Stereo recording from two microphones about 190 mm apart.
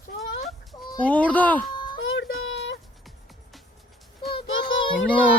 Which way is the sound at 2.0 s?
85° left.